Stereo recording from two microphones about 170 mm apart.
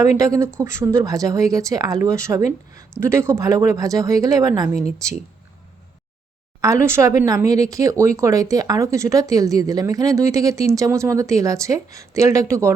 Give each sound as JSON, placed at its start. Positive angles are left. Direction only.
{"t": 0.2, "sound": "speech", "side_deg": -15}
{"t": 6.6, "sound": "speech", "side_deg": -20}